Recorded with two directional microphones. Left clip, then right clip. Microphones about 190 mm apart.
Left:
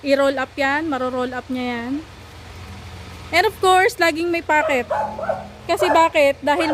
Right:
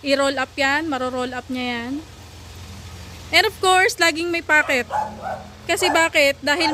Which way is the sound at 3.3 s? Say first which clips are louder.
Left 1 dB; 10° left (ahead or behind).